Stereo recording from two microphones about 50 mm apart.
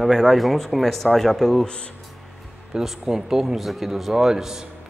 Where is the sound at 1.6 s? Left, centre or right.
Left.